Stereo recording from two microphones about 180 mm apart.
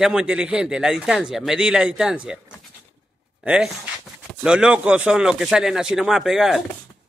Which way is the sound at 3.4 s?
5° right (ahead or behind).